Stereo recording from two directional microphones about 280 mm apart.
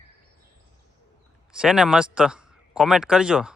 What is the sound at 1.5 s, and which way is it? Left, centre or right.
Speech, centre.